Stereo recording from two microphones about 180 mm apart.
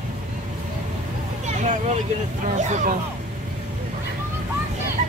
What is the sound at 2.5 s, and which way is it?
Speech, 40° right (ahead or behind).